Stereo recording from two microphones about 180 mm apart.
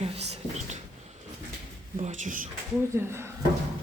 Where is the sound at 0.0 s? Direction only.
35° right (ahead or behind).